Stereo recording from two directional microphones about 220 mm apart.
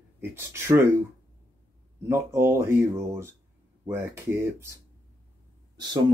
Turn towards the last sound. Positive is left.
turn(degrees=-20)  # may be behind; listen again after turning